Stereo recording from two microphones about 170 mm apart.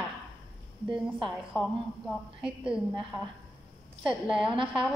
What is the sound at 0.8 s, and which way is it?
A woman's voice, centre (ahead or behind).